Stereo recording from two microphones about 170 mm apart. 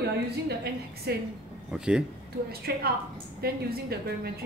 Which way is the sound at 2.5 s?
65° right (ahead or behind).